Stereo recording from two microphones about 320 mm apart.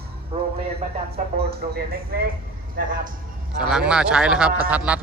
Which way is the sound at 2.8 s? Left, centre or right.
Right.